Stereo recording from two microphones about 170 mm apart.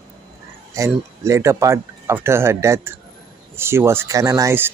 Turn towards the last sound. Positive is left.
turn(degrees=-20)  # may be behind; listen again after turning